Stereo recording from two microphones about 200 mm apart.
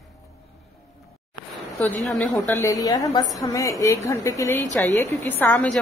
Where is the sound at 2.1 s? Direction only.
5° left (ahead or behind).